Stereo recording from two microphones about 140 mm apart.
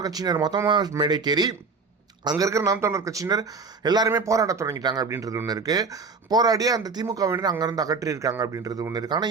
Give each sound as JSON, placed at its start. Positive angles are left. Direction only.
{"t": 0.0, "sound": "speech", "side_deg": -25}